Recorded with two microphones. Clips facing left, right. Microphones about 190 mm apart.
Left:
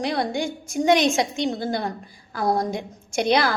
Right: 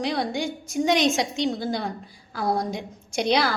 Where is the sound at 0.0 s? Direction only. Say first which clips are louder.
Left 1 dB; 50° left (ahead or behind).